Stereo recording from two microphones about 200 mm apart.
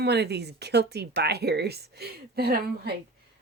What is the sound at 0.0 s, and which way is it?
A woman's voice, 55° right (ahead or behind).